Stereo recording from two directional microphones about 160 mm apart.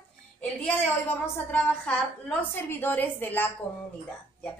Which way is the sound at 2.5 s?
15° left (ahead or behind).